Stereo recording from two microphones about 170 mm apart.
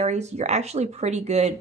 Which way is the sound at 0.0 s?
40° right (ahead or behind).